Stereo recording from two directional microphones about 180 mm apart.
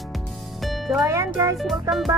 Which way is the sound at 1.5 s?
Centre (ahead or behind).